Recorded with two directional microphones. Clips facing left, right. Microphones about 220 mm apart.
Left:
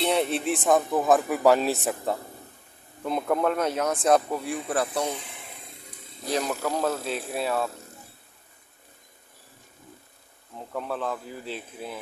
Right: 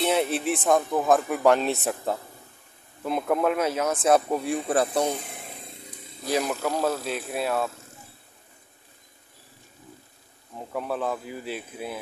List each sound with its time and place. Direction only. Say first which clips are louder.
0.0 s a man's voice: right 1 dB; centre (ahead or behind)
4.3 s speech: right 4 dB; 25° right (ahead or behind)
6.3 s a man's voice: right 1 dB; 10° right (ahead or behind)
10.7 s speech: right 2 dB; 10° right (ahead or behind)